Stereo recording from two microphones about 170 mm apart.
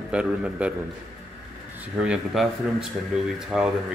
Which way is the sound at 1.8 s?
5° right (ahead or behind).